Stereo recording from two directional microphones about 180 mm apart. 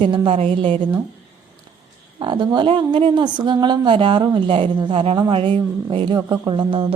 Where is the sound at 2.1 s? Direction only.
25° right (ahead or behind).